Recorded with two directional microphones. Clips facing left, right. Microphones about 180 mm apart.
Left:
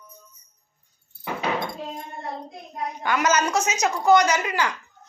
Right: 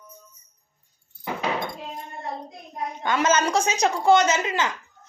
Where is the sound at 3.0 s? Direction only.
25° right (ahead or behind).